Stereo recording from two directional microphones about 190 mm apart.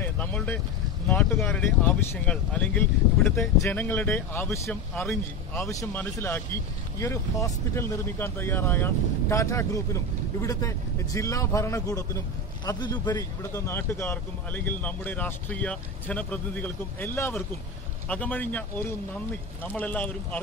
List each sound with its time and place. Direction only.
0.0 s vehicle: 10° left (ahead or behind)
1.0 s speech: 10° left (ahead or behind)